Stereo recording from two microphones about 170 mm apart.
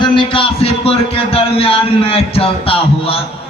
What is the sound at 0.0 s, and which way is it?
Music, 30° left (ahead or behind).